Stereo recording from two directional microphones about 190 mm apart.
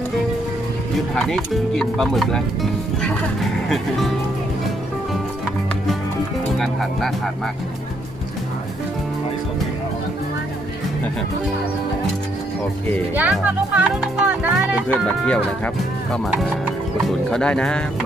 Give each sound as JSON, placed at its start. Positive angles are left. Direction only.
{"t": 1.1, "sound": "speech", "side_deg": 5}
{"t": 6.6, "sound": "speech", "side_deg": 0}
{"t": 13.1, "sound": "speech", "side_deg": -10}
{"t": 15.2, "sound": "speech", "side_deg": 5}